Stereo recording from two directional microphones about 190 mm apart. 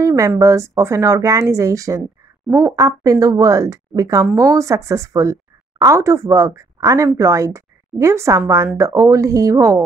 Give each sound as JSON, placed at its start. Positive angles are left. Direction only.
{"t": 0.0, "sound": "speech", "side_deg": -15}